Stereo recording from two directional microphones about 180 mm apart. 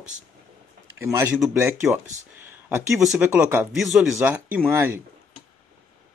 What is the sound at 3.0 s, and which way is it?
Speech, 5° right (ahead or behind).